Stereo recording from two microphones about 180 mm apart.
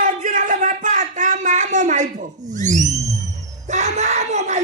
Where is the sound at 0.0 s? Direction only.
45° right (ahead or behind).